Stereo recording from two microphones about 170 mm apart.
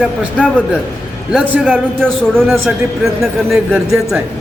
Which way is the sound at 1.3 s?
5° right (ahead or behind).